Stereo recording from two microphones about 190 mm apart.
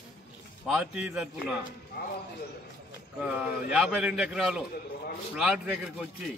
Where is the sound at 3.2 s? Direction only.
5° right (ahead or behind).